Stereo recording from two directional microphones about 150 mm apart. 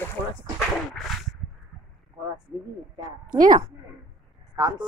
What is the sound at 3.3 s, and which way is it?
Speech, 25° right (ahead or behind).